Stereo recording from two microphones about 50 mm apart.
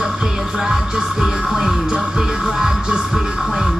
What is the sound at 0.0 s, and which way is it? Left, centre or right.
Music, centre.